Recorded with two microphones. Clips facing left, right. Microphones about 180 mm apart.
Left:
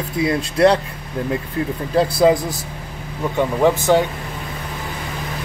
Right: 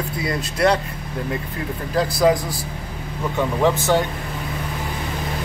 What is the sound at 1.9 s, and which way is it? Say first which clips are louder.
Speech: left 3 dB; 25° left (ahead or behind).